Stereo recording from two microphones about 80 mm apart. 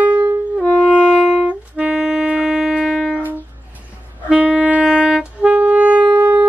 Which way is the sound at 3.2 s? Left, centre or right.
Right.